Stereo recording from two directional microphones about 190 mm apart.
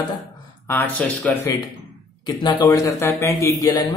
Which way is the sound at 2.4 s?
20° left (ahead or behind).